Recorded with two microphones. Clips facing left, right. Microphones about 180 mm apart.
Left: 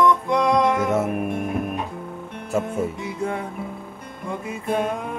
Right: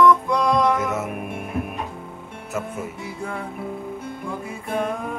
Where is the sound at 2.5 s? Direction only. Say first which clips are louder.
Left 6 dB; 20° left (ahead or behind).